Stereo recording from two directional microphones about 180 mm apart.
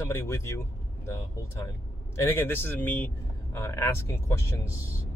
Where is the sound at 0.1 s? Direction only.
15° left (ahead or behind).